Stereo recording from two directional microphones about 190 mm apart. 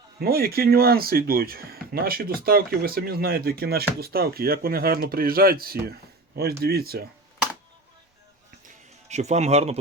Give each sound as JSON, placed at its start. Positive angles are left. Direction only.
{"t": 0.2, "sound": "speech", "side_deg": -55}
{"t": 8.6, "sound": "music", "side_deg": -35}